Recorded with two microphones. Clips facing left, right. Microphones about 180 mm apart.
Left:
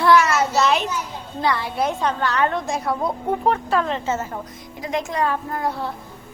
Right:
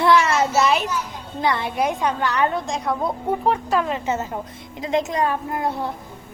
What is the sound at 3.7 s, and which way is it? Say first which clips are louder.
A woman's voice: even; 10° right (ahead or behind).